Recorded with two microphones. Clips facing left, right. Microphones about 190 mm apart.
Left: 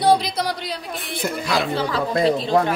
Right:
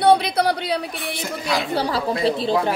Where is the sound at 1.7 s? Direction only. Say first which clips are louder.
Right 1 dB; 35° right (ahead or behind).